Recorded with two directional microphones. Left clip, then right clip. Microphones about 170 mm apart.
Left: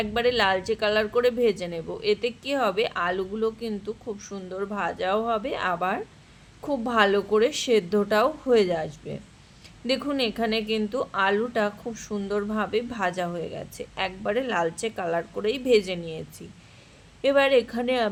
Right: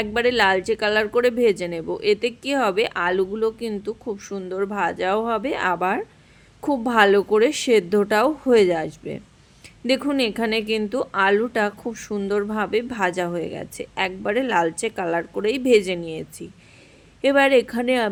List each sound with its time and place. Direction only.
0.0 s a woman's voice: 40° right (ahead or behind)